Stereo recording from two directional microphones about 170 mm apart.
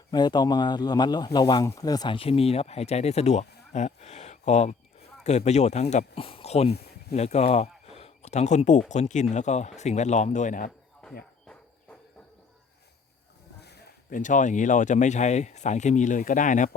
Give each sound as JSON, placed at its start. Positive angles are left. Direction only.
{"t": 0.1, "sound": "speech", "side_deg": 25}
{"t": 14.1, "sound": "speech", "side_deg": 50}